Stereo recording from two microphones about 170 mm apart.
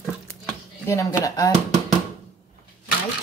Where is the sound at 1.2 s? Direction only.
20° left (ahead or behind).